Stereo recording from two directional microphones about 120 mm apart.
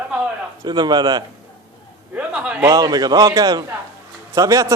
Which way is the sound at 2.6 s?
30° right (ahead or behind).